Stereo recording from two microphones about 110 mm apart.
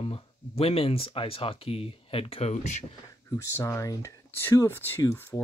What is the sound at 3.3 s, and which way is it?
Speech, 25° left (ahead or behind).